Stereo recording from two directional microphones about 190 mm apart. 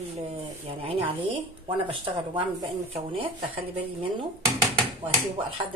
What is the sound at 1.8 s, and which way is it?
Speech, 25° right (ahead or behind).